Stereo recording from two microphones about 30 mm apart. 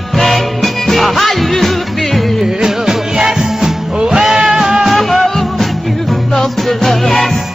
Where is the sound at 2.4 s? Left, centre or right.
Centre.